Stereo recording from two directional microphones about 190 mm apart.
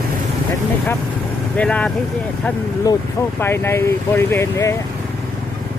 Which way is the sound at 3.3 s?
10° left (ahead or behind).